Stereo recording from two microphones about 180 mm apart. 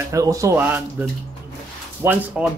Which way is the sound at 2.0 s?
15° right (ahead or behind).